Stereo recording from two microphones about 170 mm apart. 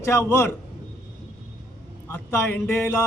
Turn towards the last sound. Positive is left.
turn(degrees=15)  # may be behind; listen again after turning